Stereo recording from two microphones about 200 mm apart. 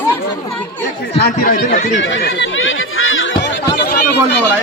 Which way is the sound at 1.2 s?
45° left (ahead or behind).